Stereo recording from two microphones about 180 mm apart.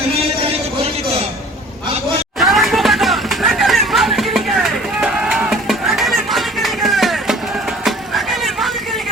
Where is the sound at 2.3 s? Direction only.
Centre (ahead or behind).